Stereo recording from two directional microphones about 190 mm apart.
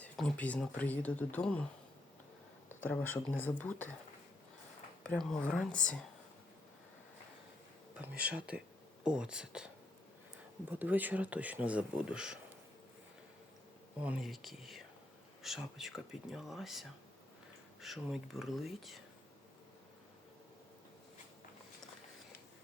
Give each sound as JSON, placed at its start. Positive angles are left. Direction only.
{"t": 0.0, "sound": "speech", "side_deg": 5}
{"t": 2.6, "sound": "speech", "side_deg": 10}
{"t": 5.0, "sound": "speech", "side_deg": 5}
{"t": 8.3, "sound": "speech", "side_deg": -5}
{"t": 10.7, "sound": "speech", "side_deg": -10}
{"t": 14.0, "sound": "speech", "side_deg": -5}